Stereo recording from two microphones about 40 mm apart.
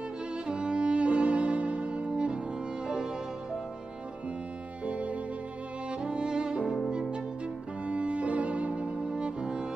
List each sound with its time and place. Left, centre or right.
0.5 s music: right
4.8 s music: right